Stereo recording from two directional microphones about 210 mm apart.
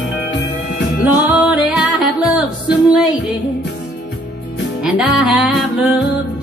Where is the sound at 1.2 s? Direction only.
5° right (ahead or behind).